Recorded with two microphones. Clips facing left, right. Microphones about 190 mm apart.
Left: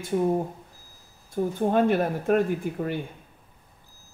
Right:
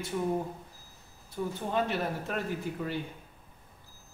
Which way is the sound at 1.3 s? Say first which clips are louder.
Left 8 dB; 50° left (ahead or behind).